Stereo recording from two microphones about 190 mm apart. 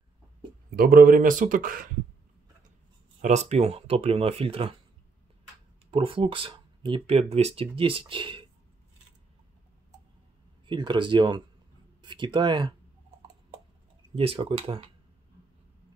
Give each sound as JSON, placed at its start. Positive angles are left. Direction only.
{"t": 0.7, "sound": "speech", "side_deg": -50}
{"t": 3.2, "sound": "speech", "side_deg": -35}
{"t": 5.9, "sound": "speech", "side_deg": -30}
{"t": 10.7, "sound": "speech", "side_deg": -25}
{"t": 14.1, "sound": "speech", "side_deg": -30}